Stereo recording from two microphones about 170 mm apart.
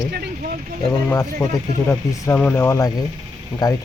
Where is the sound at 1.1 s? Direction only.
20° left (ahead or behind).